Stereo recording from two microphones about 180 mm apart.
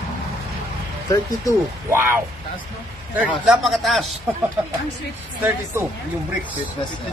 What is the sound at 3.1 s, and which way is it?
Speech, 5° right (ahead or behind).